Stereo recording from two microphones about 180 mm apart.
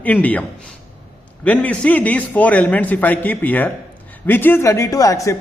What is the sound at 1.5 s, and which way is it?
A man's voice, 5° left (ahead or behind).